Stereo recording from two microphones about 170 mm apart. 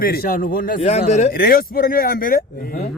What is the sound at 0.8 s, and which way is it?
Speech, 40° left (ahead or behind).